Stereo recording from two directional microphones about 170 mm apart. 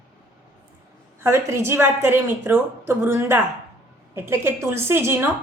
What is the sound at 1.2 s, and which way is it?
Speech, 15° right (ahead or behind).